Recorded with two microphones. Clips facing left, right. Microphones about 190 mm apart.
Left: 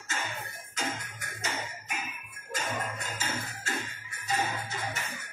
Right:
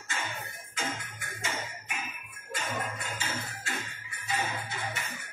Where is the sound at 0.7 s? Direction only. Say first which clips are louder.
Left 1 dB; 40° left (ahead or behind).